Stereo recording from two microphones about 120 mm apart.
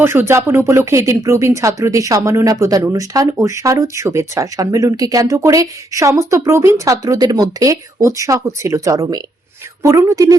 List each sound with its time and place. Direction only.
0.0 s speech: 20° right (ahead or behind)